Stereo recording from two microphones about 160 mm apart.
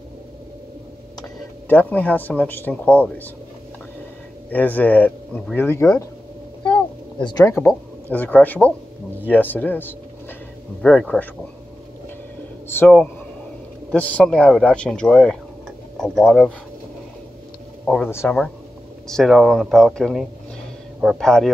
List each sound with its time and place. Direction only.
1.7 s speech: 10° left (ahead or behind)
4.5 s speech: 10° left (ahead or behind)
6.6 s a sound: 30° left (ahead or behind)
7.4 s speech: 15° left (ahead or behind)
12.6 s speech: 10° left (ahead or behind)
17.8 s speech: 10° left (ahead or behind)
19.0 s speech: centre (ahead or behind)